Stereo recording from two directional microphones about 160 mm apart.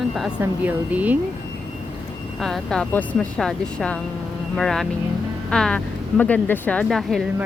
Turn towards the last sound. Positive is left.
turn(degrees=0)  # may be behind; listen again after turning